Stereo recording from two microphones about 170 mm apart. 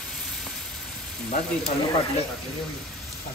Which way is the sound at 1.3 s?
40° left (ahead or behind).